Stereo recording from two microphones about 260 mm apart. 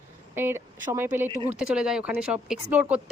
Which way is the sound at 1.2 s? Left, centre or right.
Right.